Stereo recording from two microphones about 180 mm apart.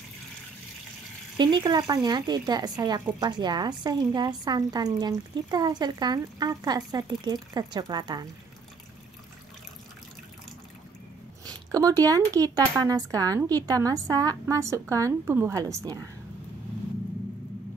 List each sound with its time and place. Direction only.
1.4 s speech: 25° right (ahead or behind)
11.4 s a woman's voice: 20° right (ahead or behind)